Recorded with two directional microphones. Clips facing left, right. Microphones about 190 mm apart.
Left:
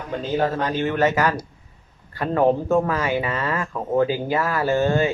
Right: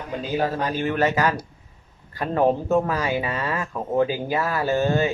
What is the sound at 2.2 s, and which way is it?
Speech, 15° right (ahead or behind).